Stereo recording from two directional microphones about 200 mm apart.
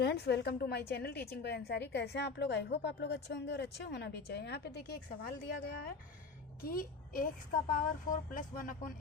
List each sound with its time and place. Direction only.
0.0 s a woman's voice: 55° left (ahead or behind)